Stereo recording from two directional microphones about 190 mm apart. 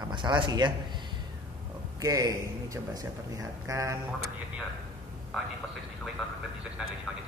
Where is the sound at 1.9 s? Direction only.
15° right (ahead or behind).